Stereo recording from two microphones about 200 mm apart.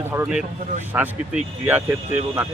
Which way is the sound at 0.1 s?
5° right (ahead or behind).